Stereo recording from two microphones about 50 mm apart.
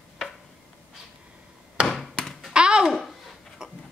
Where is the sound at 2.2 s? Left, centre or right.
Centre.